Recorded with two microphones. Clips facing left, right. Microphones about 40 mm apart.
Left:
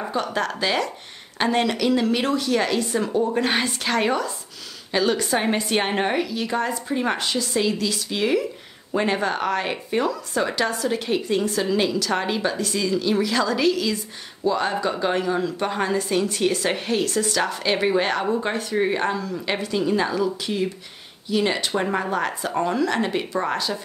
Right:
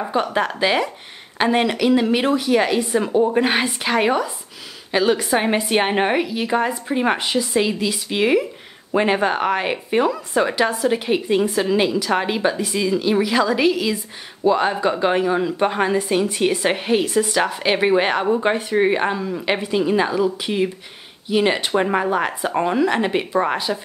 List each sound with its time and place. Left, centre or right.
0.1 s a woman's voice: right